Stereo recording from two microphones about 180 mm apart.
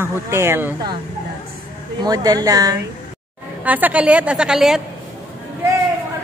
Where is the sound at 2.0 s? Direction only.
20° right (ahead or behind).